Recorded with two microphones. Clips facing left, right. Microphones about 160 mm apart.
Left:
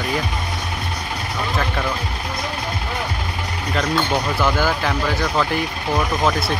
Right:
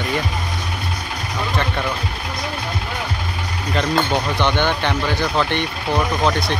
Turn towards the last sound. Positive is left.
turn(degrees=5)  # may be behind; listen again after turning